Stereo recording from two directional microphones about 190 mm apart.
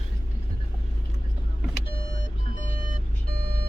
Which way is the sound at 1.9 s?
50° right (ahead or behind).